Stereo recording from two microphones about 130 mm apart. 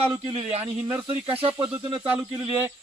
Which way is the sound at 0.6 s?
15° right (ahead or behind).